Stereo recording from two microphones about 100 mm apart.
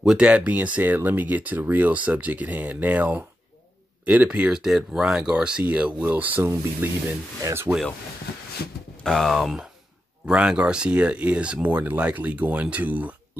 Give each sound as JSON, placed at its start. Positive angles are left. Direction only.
{"t": 0.0, "sound": "speech", "side_deg": -10}
{"t": 9.0, "sound": "speech", "side_deg": 0}